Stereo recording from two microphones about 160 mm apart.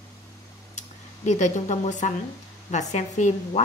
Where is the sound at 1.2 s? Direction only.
45° left (ahead or behind).